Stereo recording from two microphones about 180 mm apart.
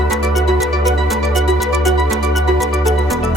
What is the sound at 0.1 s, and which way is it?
Music, centre (ahead or behind).